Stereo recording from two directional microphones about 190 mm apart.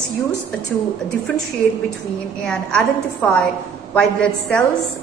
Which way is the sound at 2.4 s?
5° left (ahead or behind).